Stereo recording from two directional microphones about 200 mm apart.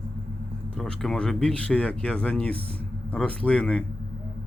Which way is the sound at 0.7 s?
Centre (ahead or behind).